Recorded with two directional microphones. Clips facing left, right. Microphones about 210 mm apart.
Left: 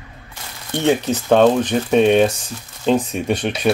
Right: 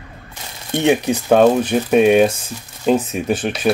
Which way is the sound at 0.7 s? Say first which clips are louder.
Right 2 dB; 15° right (ahead or behind).